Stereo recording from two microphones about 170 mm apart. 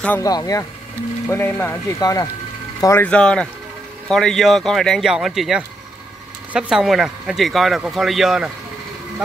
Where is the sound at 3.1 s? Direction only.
5° left (ahead or behind).